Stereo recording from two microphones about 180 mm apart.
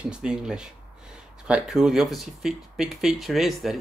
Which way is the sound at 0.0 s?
5° right (ahead or behind).